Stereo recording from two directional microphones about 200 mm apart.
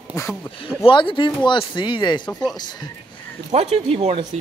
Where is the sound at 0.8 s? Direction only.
25° left (ahead or behind).